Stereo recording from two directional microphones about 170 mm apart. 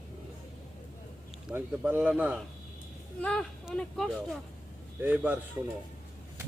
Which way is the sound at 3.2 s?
5° left (ahead or behind).